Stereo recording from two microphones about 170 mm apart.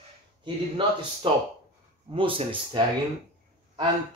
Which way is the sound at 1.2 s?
30° right (ahead or behind).